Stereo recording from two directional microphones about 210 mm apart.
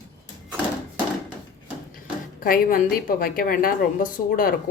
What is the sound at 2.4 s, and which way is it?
A woman's voice, 45° left (ahead or behind).